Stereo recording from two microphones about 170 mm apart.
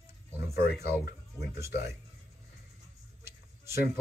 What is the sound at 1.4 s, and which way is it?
Speech, 20° left (ahead or behind).